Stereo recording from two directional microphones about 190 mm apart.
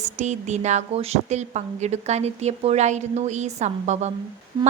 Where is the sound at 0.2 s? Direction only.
40° right (ahead or behind).